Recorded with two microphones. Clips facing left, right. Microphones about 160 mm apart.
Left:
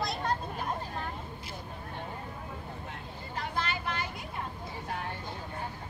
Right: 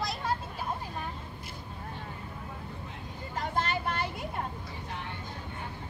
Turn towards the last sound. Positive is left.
turn(degrees=-45)  # may be behind; listen again after turning